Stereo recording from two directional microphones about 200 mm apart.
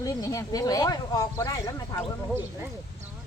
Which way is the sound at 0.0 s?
15° left (ahead or behind).